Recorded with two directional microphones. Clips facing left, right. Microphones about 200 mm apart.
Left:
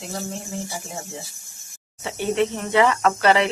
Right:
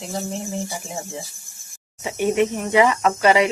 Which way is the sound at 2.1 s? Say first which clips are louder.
Right 3 dB; 15° right (ahead or behind).